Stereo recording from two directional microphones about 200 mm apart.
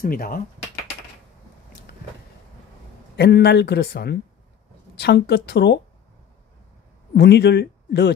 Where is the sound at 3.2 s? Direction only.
55° left (ahead or behind).